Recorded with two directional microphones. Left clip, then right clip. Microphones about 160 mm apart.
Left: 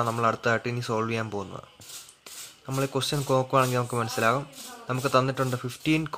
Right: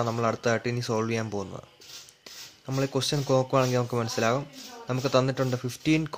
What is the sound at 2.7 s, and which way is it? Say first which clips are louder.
Speech: even; 20° right (ahead or behind).